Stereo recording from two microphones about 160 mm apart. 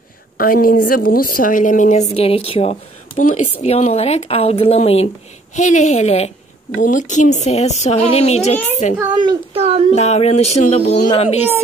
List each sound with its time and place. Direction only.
0.4 s a woman's voice: 65° left (ahead or behind); by 2.8 s 40° left (ahead or behind)
3.2 s a woman's voice: 55° left (ahead or behind)
3.6 s a child's voice: 40° left (ahead or behind)
9.1 s speech: 30° right (ahead or behind)
9.9 s a child's voice: 40° left (ahead or behind)